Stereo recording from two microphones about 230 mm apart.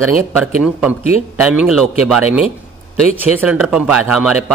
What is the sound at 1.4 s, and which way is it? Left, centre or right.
Speech, centre.